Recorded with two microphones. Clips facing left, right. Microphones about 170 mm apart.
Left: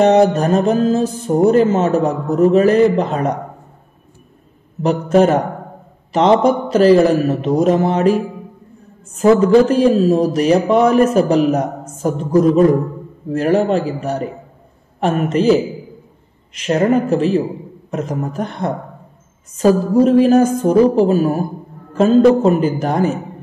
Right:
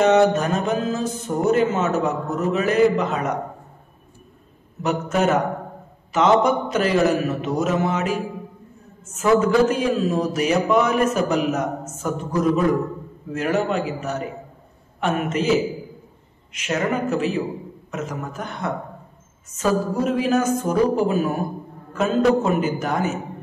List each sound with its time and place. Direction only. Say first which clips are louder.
0.0 s music: left 4 dB; 35° left (ahead or behind)
5.1 s music: left 8 dB; 30° left (ahead or behind)